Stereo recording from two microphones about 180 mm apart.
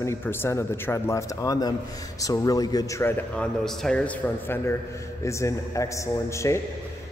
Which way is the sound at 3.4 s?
5° left (ahead or behind).